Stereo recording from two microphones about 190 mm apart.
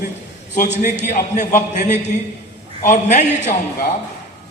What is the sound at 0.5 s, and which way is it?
A man's voice, 45° left (ahead or behind).